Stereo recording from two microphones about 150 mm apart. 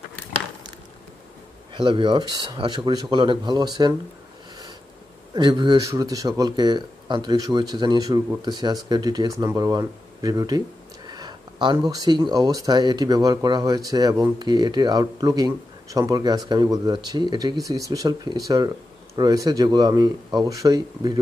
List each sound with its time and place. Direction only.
1.7 s speech: 35° right (ahead or behind)
5.3 s speech: 30° right (ahead or behind)